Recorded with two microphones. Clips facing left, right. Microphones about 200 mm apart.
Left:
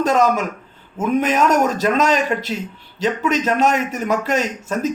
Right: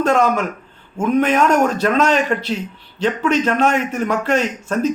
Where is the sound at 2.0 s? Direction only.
40° left (ahead or behind).